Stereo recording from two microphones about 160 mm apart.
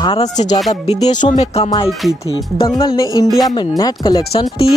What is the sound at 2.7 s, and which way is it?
Speech, 25° left (ahead or behind).